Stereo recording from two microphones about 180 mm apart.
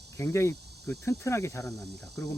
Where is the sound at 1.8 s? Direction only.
65° right (ahead or behind).